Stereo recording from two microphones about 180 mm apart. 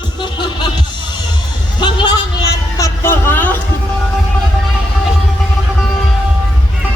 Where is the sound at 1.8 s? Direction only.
25° left (ahead or behind).